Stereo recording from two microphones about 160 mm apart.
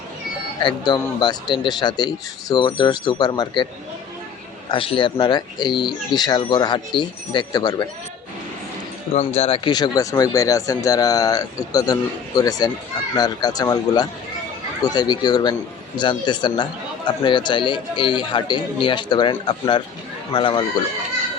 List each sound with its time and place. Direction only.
0.6 s speech: 25° left (ahead or behind)
4.7 s speech: 30° left (ahead or behind)
9.1 s speech: 40° left (ahead or behind)